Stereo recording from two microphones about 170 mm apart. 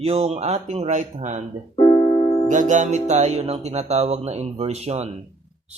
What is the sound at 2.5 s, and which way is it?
Speech, 45° right (ahead or behind).